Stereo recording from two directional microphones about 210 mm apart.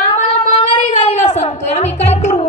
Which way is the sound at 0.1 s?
25° left (ahead or behind).